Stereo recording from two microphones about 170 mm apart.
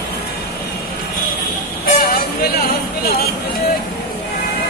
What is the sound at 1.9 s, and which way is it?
Vehicle, 60° left (ahead or behind).